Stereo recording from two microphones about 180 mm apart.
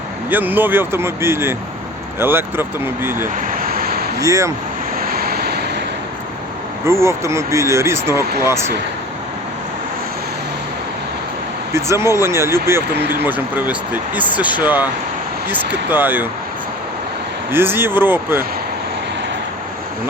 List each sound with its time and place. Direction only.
0.3 s speech: 10° right (ahead or behind)
3.3 s vehicle: 50° right (ahead or behind)
4.2 s speech: 15° right (ahead or behind)
4.9 s vehicle: 55° right (ahead or behind)
6.8 s speech: 15° right (ahead or behind)
11.7 s speech: 15° right (ahead or behind)
17.5 s speech: 10° right (ahead or behind)